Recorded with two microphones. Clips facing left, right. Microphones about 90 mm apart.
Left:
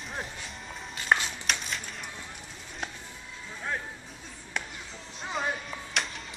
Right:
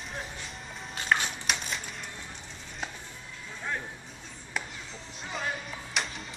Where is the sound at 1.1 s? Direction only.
20° left (ahead or behind).